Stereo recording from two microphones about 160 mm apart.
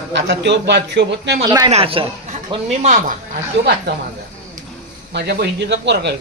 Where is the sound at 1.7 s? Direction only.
35° right (ahead or behind).